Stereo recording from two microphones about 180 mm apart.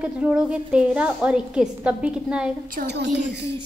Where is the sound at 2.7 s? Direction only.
70° right (ahead or behind).